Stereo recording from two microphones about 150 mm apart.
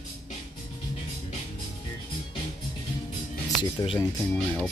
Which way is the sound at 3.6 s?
30° left (ahead or behind).